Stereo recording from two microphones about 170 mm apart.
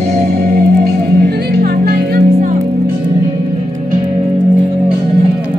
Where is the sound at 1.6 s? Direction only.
65° right (ahead or behind).